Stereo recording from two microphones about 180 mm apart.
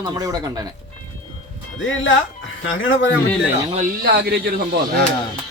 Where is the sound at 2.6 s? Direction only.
90° left.